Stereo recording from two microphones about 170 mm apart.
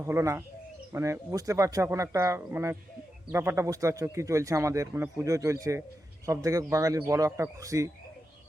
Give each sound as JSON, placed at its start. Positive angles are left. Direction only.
{"t": 0.0, "sound": "speech", "side_deg": -15}